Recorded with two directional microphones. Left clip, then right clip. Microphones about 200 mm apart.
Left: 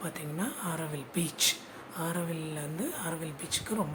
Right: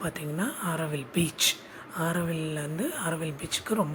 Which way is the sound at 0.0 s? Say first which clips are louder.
Right 5 dB; 15° right (ahead or behind).